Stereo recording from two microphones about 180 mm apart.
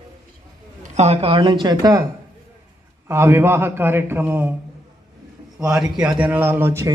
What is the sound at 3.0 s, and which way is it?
A man's voice, 15° right (ahead or behind).